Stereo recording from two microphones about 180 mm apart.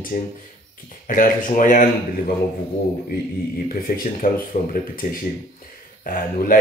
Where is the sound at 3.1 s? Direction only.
55° left (ahead or behind).